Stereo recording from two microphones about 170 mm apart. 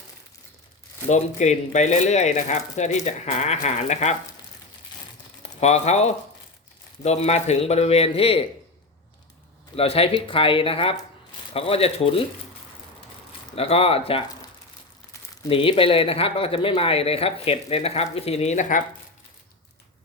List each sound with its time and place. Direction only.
1.0 s speech: 45° left (ahead or behind)
5.4 s speech: 40° left (ahead or behind)
9.7 s speech: 35° left (ahead or behind)
13.6 s speech: 35° left (ahead or behind)
15.4 s speech: 35° left (ahead or behind)